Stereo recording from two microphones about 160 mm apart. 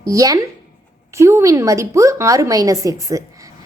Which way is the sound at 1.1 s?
20° right (ahead or behind).